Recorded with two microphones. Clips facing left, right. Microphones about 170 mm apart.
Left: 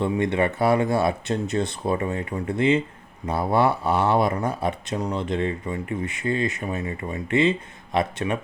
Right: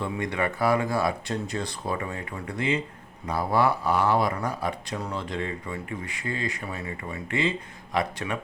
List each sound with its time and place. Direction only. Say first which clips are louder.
0.0 s speech: left 6 dB; 25° left (ahead or behind)